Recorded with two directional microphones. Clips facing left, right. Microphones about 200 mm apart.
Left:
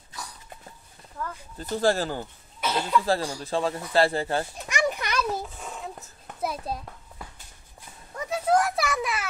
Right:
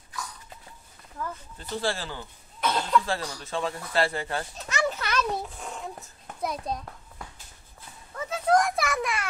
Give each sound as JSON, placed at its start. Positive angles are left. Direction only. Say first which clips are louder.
{"t": 1.6, "sound": "speech", "louder": "left 7 dB", "side_deg": 45}
{"t": 2.6, "sound": "cough", "louder": "even", "side_deg": 5}
{"t": 3.1, "sound": "speech", "louder": "left 5 dB", "side_deg": 35}
{"t": 4.6, "sound": "children playing", "louder": "left 1 dB", "side_deg": 15}
{"t": 5.3, "sound": "a sound", "louder": "even", "side_deg": 0}
{"t": 8.3, "sound": "children playing", "louder": "even", "side_deg": 5}